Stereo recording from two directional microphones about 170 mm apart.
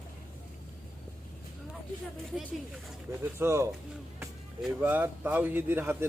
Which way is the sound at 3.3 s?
15° right (ahead or behind).